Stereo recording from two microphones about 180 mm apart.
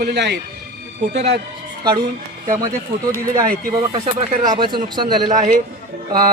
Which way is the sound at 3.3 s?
20° right (ahead or behind).